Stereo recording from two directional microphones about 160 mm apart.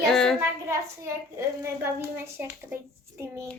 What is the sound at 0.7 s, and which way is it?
A child's voice, 15° right (ahead or behind).